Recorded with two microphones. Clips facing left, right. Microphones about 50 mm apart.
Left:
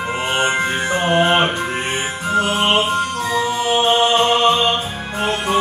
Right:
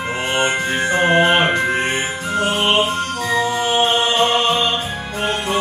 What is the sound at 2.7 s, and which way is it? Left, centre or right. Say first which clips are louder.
Music: even; left.